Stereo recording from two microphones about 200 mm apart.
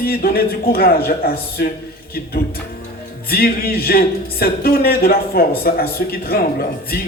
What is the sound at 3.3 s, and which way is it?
Speech, 50° left (ahead or behind).